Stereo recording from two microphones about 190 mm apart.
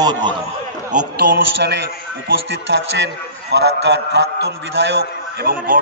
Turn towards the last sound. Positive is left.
turn(degrees=-55)  # may be behind; listen again after turning